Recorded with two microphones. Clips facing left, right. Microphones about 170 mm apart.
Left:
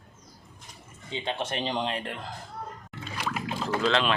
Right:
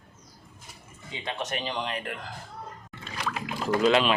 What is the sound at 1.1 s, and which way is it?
Speech, 30° left (ahead or behind).